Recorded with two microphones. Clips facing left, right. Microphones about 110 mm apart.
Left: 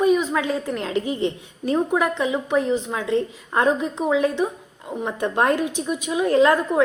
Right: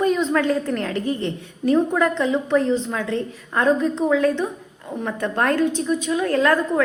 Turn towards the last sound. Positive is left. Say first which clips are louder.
# left 1 dB
turn(degrees=15)  # may be behind; listen again after turning